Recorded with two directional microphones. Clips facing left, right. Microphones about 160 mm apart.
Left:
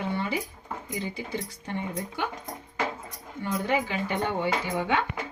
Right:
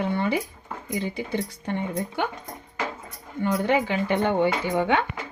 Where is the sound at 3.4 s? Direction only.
65° right (ahead or behind).